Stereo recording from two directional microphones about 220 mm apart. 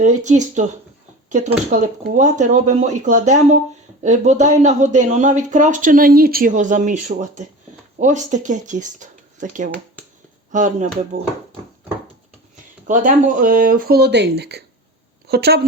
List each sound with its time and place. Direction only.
0.0 s speech: 35° right (ahead or behind)
12.9 s a woman's voice: 35° right (ahead or behind)